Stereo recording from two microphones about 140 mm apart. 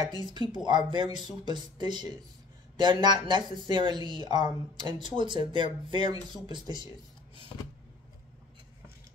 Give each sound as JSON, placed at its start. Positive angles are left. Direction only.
{"t": 0.1, "sound": "speech", "side_deg": -35}